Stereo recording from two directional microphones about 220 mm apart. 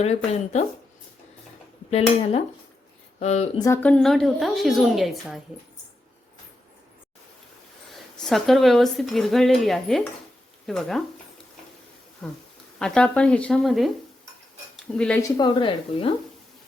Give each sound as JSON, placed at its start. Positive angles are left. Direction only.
{"t": 1.9, "sound": "speech", "side_deg": 25}
{"t": 3.6, "sound": "speech", "side_deg": 10}
{"t": 8.2, "sound": "speech", "side_deg": 0}
{"t": 12.2, "sound": "speech", "side_deg": 5}
{"t": 14.9, "sound": "speech", "side_deg": 5}
{"t": 15.4, "sound": "speech", "side_deg": 20}